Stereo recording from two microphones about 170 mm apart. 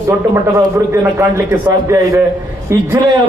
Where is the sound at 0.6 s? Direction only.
20° right (ahead or behind).